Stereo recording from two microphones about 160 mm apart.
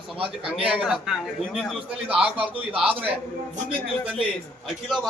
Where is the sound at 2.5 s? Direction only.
35° right (ahead or behind).